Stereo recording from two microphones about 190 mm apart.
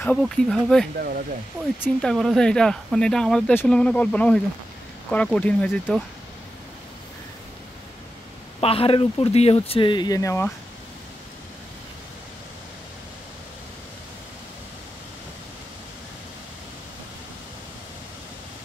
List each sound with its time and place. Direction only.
0.0 s speech: 5° left (ahead or behind)
0.9 s speech: 50° right (ahead or behind)
1.8 s speech: 5° left (ahead or behind)
8.5 s speech: 30° left (ahead or behind); by 10.5 s 15° left (ahead or behind)